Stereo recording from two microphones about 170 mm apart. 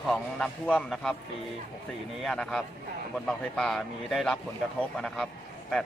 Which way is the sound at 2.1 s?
Centre (ahead or behind).